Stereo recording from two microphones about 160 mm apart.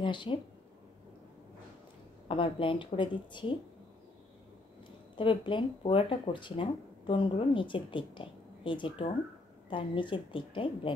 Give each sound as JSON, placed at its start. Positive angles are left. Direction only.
{"t": 0.0, "sound": "speech", "side_deg": 30}
{"t": 2.2, "sound": "speech", "side_deg": 35}
{"t": 5.1, "sound": "speech", "side_deg": 30}